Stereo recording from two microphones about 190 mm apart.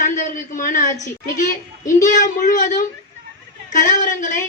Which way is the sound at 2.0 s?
40° left (ahead or behind).